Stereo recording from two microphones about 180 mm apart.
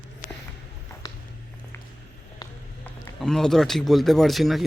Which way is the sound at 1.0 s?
20° left (ahead or behind).